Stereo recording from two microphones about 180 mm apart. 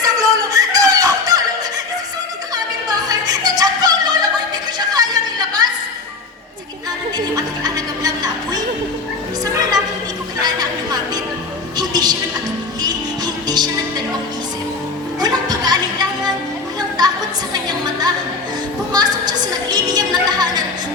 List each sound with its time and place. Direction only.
0.0 s a sound: 20° right (ahead or behind)
2.9 s music: 20° right (ahead or behind)
4.9 s a sound: 20° right (ahead or behind)
7.3 s music: 20° right (ahead or behind)
10.4 s music: 20° right (ahead or behind)
15.2 s music: 20° right (ahead or behind)
17.5 s music: 20° right (ahead or behind)